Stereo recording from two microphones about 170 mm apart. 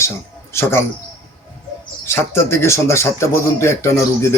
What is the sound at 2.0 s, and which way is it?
Speech, 15° left (ahead or behind).